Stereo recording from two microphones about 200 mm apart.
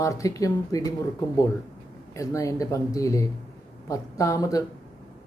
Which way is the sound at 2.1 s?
15° left (ahead or behind).